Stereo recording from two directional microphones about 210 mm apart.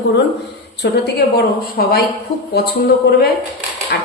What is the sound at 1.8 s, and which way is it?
Speech, 45° left (ahead or behind).